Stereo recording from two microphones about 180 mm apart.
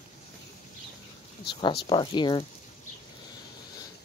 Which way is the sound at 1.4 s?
25° left (ahead or behind).